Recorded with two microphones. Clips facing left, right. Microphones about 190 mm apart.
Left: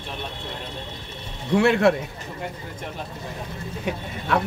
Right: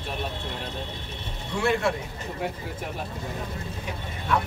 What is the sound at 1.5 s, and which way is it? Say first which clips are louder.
Speech: left 7 dB; 65° left (ahead or behind).